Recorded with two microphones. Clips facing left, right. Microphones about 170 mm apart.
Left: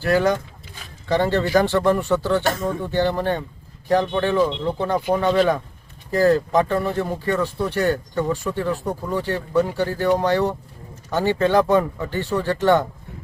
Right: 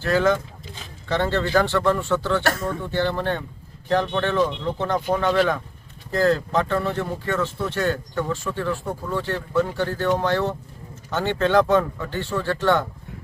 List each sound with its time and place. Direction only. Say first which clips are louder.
0.0 s speech: left 1 dB; 15° left (ahead or behind)